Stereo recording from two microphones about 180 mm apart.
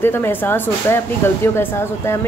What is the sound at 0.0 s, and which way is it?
Speech, 10° left (ahead or behind).